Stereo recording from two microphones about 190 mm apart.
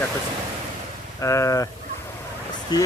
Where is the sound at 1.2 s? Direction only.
15° left (ahead or behind).